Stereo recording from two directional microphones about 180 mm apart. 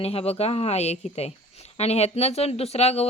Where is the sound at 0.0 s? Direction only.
35° left (ahead or behind).